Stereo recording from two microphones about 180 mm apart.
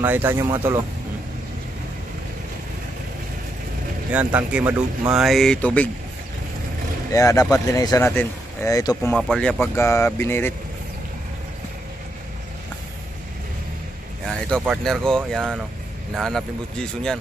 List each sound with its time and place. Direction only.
0.0 s speech: 10° right (ahead or behind)
4.1 s speech: 10° right (ahead or behind); by 5.9 s 10° left (ahead or behind)
7.1 s speech: 20° left (ahead or behind)
9.1 s speech: 5° left (ahead or behind)
14.6 s speech: centre (ahead or behind)